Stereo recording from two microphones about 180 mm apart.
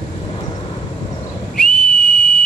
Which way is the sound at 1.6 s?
5° left (ahead or behind).